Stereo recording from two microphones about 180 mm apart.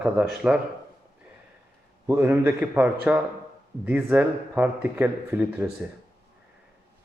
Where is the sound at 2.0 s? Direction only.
10° right (ahead or behind).